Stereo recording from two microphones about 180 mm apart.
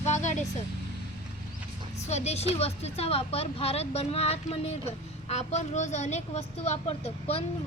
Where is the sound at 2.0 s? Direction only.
35° left (ahead or behind).